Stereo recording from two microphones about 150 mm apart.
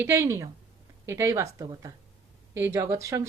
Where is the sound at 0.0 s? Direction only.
20° right (ahead or behind).